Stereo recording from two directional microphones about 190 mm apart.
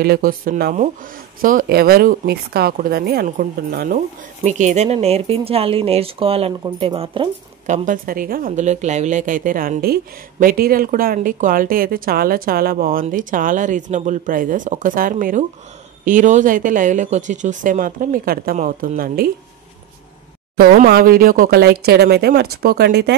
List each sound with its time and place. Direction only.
0.0 s speech: 50° right (ahead or behind)
4.4 s speech: 40° right (ahead or behind)
7.6 s speech: 40° right (ahead or behind)
20.5 s speech: 50° right (ahead or behind)